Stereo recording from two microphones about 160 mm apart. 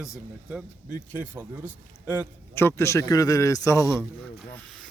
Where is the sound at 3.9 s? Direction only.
Centre (ahead or behind).